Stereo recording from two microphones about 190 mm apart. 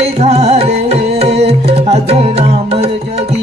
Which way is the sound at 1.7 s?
30° right (ahead or behind).